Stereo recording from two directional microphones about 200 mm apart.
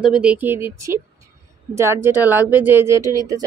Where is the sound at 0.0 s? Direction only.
5° right (ahead or behind).